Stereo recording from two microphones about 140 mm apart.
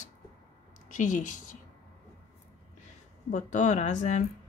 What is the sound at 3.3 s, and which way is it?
Speech, 60° left (ahead or behind).